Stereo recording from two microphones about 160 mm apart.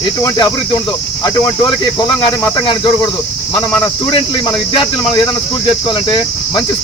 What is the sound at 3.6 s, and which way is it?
Speech, 30° left (ahead or behind).